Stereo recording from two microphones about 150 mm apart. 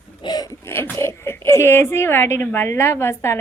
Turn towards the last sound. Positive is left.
turn(degrees=15)  # may be behind; listen again after turning